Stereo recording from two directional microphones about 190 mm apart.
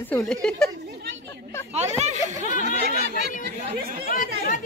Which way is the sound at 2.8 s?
55° right (ahead or behind).